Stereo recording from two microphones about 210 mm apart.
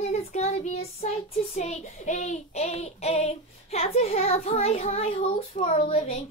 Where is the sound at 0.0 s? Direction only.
30° left (ahead or behind).